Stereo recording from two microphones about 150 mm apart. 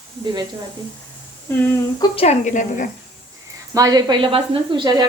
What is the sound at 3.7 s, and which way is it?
Speech, 25° right (ahead or behind).